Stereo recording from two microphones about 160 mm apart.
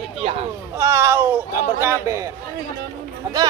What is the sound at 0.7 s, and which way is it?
A man's voice, 20° right (ahead or behind).